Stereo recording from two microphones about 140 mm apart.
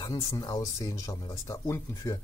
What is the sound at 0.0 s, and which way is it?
Speech, 25° left (ahead or behind).